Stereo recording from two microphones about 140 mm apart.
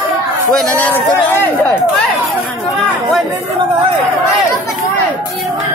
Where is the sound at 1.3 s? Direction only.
15° left (ahead or behind).